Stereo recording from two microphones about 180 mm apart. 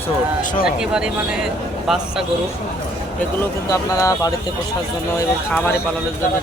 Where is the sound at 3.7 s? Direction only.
20° left (ahead or behind).